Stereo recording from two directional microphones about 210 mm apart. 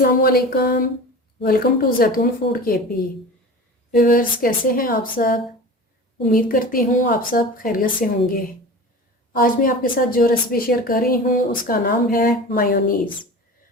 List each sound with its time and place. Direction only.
0.0 s a woman's voice: 45° left (ahead or behind)
3.9 s a woman's voice: 45° left (ahead or behind)
9.3 s a woman's voice: 40° left (ahead or behind)